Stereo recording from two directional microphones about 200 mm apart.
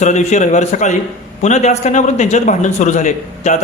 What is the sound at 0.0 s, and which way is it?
A man's voice, 35° left (ahead or behind).